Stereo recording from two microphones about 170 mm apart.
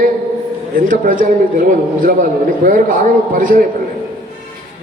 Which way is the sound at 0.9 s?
50° right (ahead or behind).